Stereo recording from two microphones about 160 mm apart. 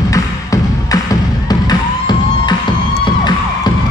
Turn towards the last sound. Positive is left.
turn(degrees=25)  # may be behind; listen again after turning